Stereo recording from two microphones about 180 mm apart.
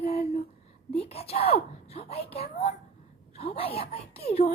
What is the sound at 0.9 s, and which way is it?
Speech, 35° left (ahead or behind).